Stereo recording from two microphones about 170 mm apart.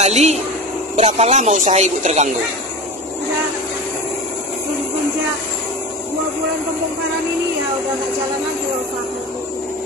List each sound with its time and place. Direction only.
0.0 s speech: 40° right (ahead or behind)